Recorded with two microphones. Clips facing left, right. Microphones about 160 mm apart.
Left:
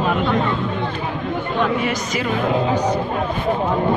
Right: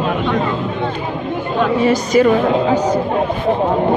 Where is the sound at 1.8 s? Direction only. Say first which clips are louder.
Right 10 dB; 35° right (ahead or behind).